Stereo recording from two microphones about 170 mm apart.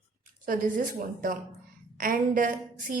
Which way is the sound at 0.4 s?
55° right (ahead or behind).